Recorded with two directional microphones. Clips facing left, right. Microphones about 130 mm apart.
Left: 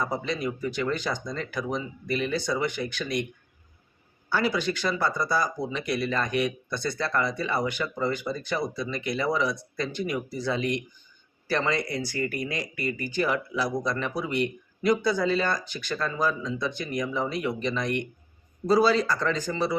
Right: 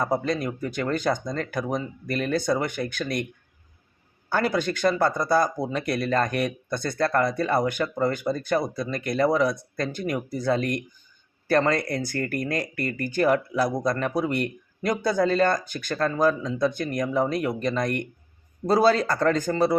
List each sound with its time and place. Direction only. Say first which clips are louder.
0.0 s speech: right 4 dB; 50° right (ahead or behind)
4.3 s speech: right 2 dB; 50° right (ahead or behind)